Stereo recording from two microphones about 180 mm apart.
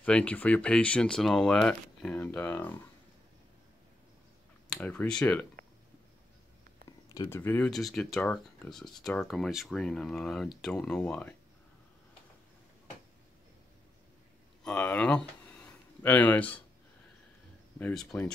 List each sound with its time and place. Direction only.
0.0 s speech: 5° left (ahead or behind)
4.7 s speech: 5° left (ahead or behind)
7.1 s speech: 20° left (ahead or behind)
14.6 s a sound: 5° left (ahead or behind)
17.7 s speech: 10° left (ahead or behind)